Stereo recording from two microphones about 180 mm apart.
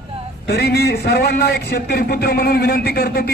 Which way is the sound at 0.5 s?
65° left (ahead or behind).